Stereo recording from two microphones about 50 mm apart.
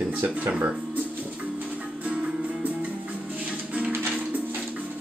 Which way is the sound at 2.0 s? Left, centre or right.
Right.